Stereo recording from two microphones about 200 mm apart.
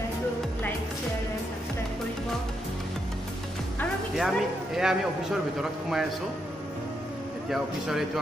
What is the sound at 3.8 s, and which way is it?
A man's voice, centre (ahead or behind).